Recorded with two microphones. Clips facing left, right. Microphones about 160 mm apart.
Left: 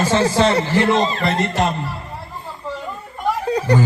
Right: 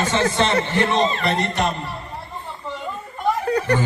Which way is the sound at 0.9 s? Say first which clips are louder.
Left 1 dB; centre (ahead or behind).